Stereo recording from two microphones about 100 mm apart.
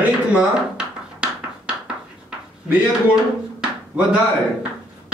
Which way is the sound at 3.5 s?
10° right (ahead or behind).